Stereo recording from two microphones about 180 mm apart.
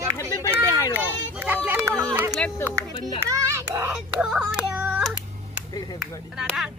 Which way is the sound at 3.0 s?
25° left (ahead or behind).